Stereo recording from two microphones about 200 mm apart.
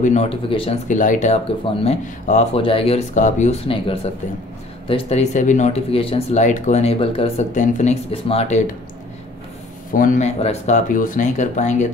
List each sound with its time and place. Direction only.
0.0 s speech: 35° left (ahead or behind)
9.9 s speech: 40° left (ahead or behind)